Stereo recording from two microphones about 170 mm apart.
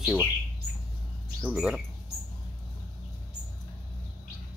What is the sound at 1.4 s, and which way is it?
Speech, 5° right (ahead or behind).